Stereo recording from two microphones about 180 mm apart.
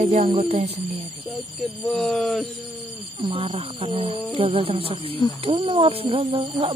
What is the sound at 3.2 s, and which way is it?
Speech, 30° right (ahead or behind).